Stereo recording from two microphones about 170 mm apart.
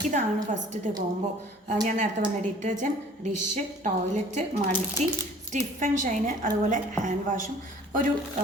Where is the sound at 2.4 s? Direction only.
45° right (ahead or behind).